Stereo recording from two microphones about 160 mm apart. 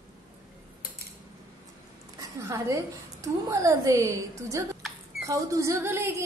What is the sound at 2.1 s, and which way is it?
A woman's voice, 20° right (ahead or behind).